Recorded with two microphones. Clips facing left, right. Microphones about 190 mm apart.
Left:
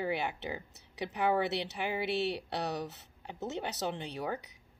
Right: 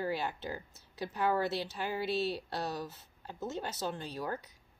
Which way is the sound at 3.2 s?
20° left (ahead or behind).